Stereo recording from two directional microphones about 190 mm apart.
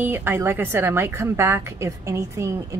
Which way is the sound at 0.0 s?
10° right (ahead or behind).